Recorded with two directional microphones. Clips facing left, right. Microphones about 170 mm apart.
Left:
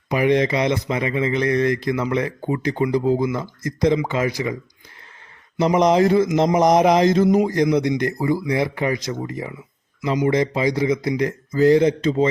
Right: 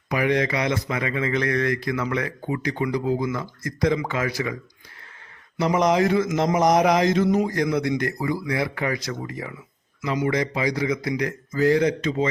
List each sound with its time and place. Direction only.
0.1 s speech: 25° left (ahead or behind)
5.5 s speech: 25° left (ahead or behind)